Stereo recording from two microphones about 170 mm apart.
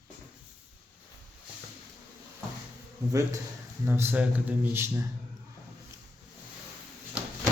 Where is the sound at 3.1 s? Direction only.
15° right (ahead or behind).